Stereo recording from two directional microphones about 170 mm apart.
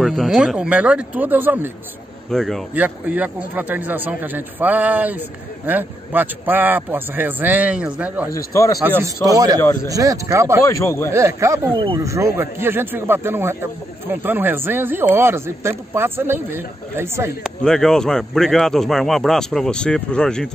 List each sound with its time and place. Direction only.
0.0 s speech: centre (ahead or behind)
2.3 s speech: centre (ahead or behind)
2.7 s speech: 10° right (ahead or behind)
8.3 s a man's voice: 20° left (ahead or behind)
9.0 s speech: 20° right (ahead or behind)
10.7 s speech: 15° left (ahead or behind)
11.1 s speech: 15° right (ahead or behind)
11.7 s speech: 30° right (ahead or behind)
12.0 s speech: 20° right (ahead or behind)
17.4 s speech: 5° left (ahead or behind)